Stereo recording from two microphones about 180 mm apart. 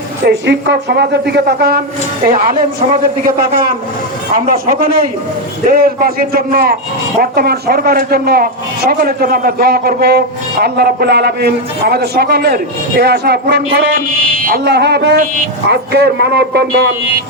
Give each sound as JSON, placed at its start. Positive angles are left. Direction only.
{"t": 0.3, "sound": "a man's voice", "side_deg": -70}